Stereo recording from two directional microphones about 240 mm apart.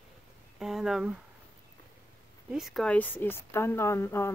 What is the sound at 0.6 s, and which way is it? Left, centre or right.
Speech, centre.